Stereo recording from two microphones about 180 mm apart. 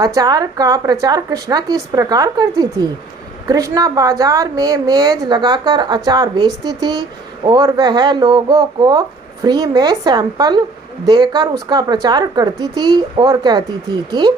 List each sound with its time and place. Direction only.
0.0 s a woman's voice: 20° right (ahead or behind)